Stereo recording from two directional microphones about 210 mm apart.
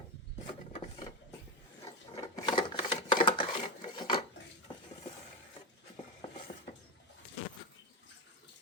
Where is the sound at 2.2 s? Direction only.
20° left (ahead or behind).